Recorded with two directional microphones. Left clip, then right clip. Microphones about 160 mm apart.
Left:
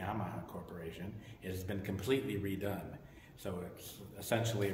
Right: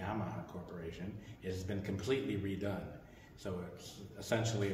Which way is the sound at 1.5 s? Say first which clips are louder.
Right 1 dB; 25° left (ahead or behind).